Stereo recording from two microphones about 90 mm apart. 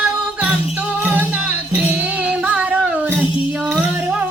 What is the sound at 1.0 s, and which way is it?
Music, 15° right (ahead or behind).